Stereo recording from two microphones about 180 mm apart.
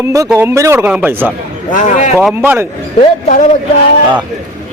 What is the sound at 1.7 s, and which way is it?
Speech, 40° left (ahead or behind).